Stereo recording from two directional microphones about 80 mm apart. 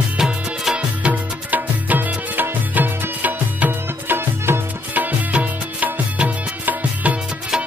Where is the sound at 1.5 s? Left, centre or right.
Right.